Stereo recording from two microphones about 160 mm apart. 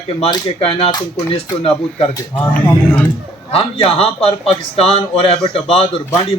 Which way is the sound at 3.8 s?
35° left (ahead or behind).